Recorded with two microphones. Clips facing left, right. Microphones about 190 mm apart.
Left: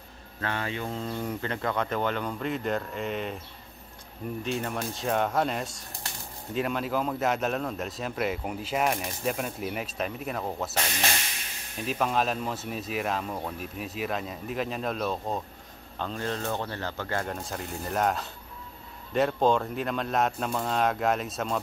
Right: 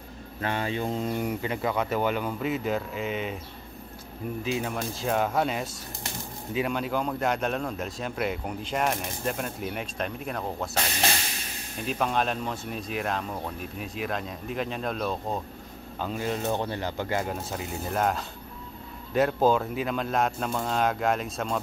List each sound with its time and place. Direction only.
0.4 s speech: 15° right (ahead or behind)
4.4 s a man's voice: centre (ahead or behind)
11.8 s a man's voice: centre (ahead or behind); by 17.3 s 15° right (ahead or behind)
17.3 s a man's voice: 5° right (ahead or behind)